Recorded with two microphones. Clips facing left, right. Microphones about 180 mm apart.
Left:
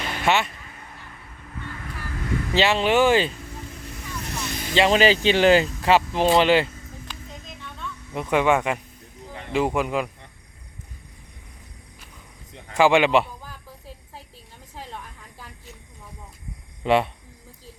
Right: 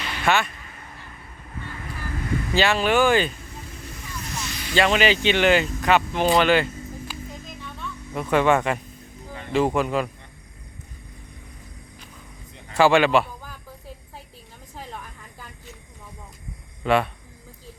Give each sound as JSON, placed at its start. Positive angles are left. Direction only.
{"t": 0.3, "sound": "speech", "side_deg": 20}
{"t": 2.5, "sound": "speech", "side_deg": 25}
{"t": 4.3, "sound": "vehicle", "side_deg": 55}
{"t": 4.7, "sound": "speech", "side_deg": 30}
{"t": 7.1, "sound": "a sound", "side_deg": -5}
{"t": 8.1, "sound": "speech", "side_deg": 15}
{"t": 12.7, "sound": "speech", "side_deg": 15}
{"t": 14.8, "sound": "a sound", "side_deg": 0}
{"t": 16.8, "sound": "speech", "side_deg": 25}